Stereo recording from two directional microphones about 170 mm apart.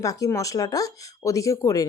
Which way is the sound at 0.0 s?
20° left (ahead or behind).